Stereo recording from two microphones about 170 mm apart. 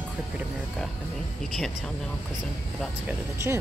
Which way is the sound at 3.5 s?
15° right (ahead or behind).